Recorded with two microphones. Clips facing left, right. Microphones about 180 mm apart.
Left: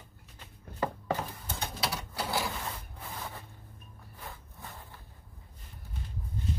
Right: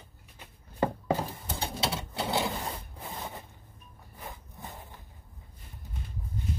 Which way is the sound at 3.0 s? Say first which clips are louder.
Right 2 dB; 20° right (ahead or behind).